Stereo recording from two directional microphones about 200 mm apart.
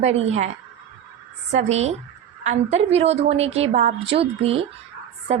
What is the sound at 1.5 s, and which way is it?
A woman's voice, 35° right (ahead or behind).